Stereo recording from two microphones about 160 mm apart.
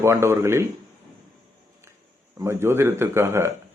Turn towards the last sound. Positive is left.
turn(degrees=-15)  # may be behind; listen again after turning